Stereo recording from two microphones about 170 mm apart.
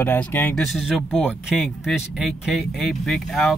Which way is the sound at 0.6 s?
Centre (ahead or behind).